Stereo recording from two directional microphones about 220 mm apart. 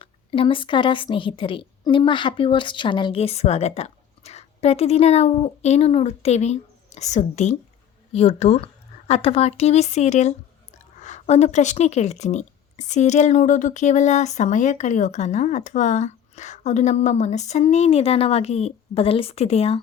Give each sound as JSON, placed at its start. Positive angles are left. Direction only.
{"t": 0.0, "sound": "a woman's voice", "side_deg": 25}